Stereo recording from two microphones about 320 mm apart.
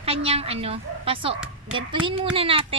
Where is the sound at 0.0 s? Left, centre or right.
Centre.